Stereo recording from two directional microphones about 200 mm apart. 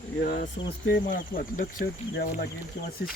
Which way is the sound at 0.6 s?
25° left (ahead or behind).